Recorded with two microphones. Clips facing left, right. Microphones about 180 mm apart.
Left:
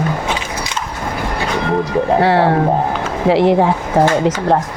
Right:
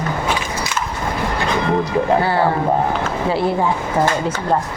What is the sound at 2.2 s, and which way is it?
A woman's voice, 90° left.